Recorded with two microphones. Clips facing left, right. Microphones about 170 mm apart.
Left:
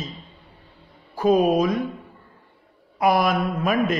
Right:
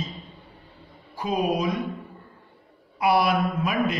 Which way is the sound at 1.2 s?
45° left (ahead or behind).